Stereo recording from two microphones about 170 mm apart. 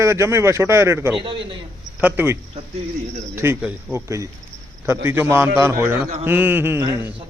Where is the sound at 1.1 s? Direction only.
30° right (ahead or behind).